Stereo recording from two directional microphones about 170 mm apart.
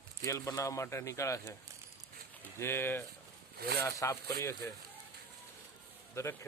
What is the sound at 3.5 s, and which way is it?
Speech, 65° right (ahead or behind).